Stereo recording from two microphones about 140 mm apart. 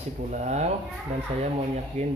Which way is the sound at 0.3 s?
55° right (ahead or behind).